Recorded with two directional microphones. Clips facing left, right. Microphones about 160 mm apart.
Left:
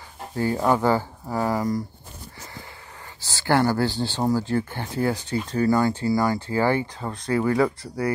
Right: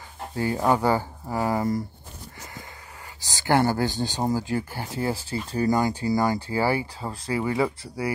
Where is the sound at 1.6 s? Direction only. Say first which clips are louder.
Even; 25° right (ahead or behind).